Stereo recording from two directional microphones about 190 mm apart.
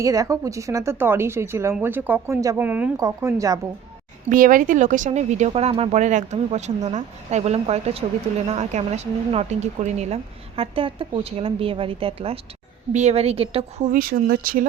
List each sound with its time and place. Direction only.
0.0 s a woman's voice: 20° right (ahead or behind)
4.3 s a woman's voice: 45° right (ahead or behind)
13.8 s speech: 45° right (ahead or behind)